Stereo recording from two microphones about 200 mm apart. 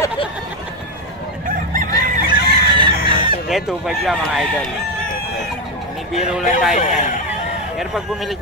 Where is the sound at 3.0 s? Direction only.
25° right (ahead or behind).